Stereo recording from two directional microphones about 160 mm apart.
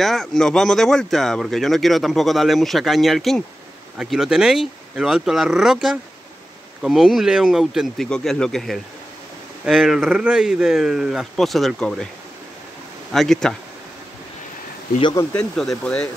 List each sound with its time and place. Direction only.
0.0 s speech: centre (ahead or behind)
13.1 s speech: centre (ahead or behind)
15.0 s speech: 30° left (ahead or behind)
15.3 s speech: 5° left (ahead or behind)